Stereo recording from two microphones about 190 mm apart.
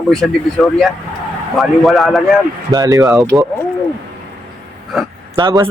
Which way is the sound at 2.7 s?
20° right (ahead or behind).